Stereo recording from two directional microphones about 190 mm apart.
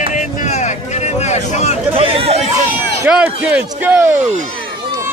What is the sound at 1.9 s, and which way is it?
Speech, 30° right (ahead or behind).